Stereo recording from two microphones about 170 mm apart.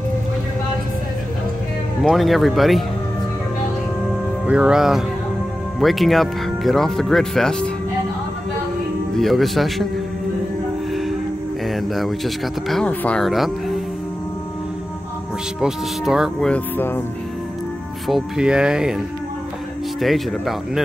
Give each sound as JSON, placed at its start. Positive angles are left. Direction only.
{"t": 2.0, "sound": "speech", "side_deg": 0}
{"t": 4.5, "sound": "speech", "side_deg": -5}
{"t": 9.1, "sound": "speech", "side_deg": 0}
{"t": 10.9, "sound": "music", "side_deg": 0}
{"t": 12.6, "sound": "speech", "side_deg": 5}
{"t": 15.6, "sound": "speech", "side_deg": -5}
{"t": 18.0, "sound": "speech", "side_deg": 0}
{"t": 20.0, "sound": "speech", "side_deg": 0}